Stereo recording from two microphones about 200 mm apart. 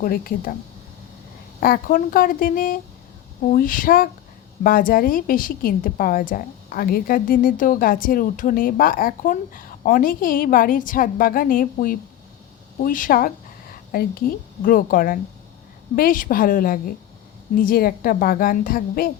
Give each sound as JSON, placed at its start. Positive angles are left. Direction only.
{"t": 0.0, "sound": "a woman's voice", "side_deg": 45}
{"t": 1.6, "sound": "a woman's voice", "side_deg": 45}